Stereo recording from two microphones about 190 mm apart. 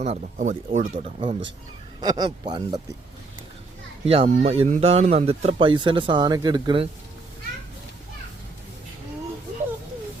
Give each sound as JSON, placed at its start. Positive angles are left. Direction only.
{"t": 0.0, "sound": "speech", "side_deg": -40}
{"t": 1.0, "sound": "speech", "side_deg": -30}
{"t": 4.0, "sound": "speech", "side_deg": -30}